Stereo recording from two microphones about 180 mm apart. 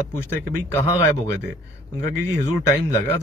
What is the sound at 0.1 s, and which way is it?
Speech, 10° left (ahead or behind).